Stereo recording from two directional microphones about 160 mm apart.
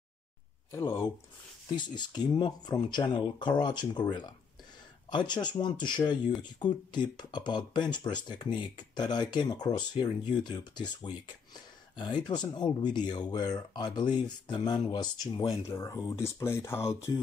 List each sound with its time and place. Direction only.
0.7 s speech: 15° left (ahead or behind)
1.8 s speech: 25° left (ahead or behind)